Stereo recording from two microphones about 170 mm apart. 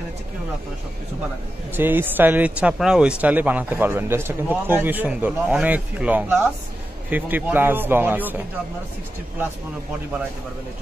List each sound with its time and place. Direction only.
1.8 s speech: 10° right (ahead or behind)